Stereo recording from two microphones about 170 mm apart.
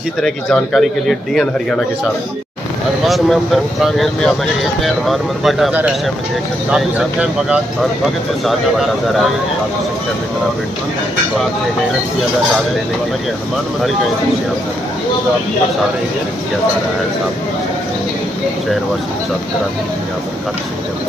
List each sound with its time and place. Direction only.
0.2 s a man's voice: 5° left (ahead or behind)
3.1 s a man's voice: centre (ahead or behind)